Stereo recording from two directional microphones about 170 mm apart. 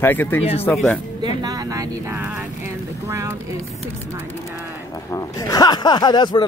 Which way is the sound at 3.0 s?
15° right (ahead or behind).